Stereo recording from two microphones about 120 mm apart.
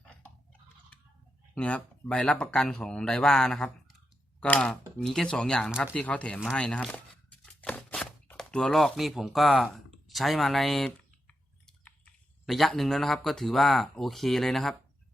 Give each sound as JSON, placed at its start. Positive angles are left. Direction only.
{"t": 1.5, "sound": "speech", "side_deg": 10}
{"t": 7.4, "sound": "a sound", "side_deg": 10}
{"t": 11.3, "sound": "chewing", "side_deg": 10}
{"t": 12.5, "sound": "speech", "side_deg": 0}